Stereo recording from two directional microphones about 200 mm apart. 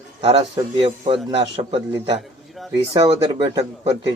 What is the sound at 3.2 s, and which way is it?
Speech, 20° right (ahead or behind).